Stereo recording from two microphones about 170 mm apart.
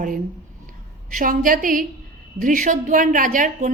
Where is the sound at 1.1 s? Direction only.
55° right (ahead or behind).